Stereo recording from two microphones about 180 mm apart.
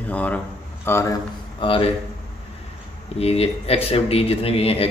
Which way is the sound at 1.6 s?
30° left (ahead or behind).